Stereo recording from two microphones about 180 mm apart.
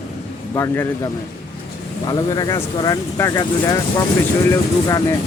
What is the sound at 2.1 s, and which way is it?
Speech, 20° left (ahead or behind).